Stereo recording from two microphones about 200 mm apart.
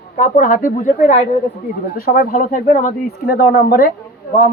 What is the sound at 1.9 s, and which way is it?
A woman's voice, 50° left (ahead or behind).